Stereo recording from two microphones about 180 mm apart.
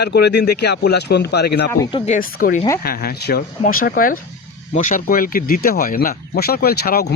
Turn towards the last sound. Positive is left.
turn(degrees=55)  # may be behind; listen again after turning